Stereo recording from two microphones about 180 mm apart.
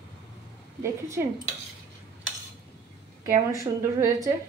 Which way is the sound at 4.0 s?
20° right (ahead or behind).